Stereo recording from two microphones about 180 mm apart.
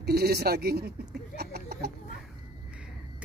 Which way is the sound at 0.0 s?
65° right (ahead or behind).